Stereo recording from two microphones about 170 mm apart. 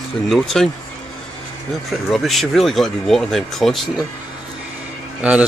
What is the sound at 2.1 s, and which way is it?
Speech, centre (ahead or behind).